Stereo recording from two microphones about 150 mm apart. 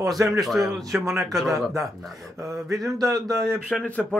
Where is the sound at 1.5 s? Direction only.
20° right (ahead or behind).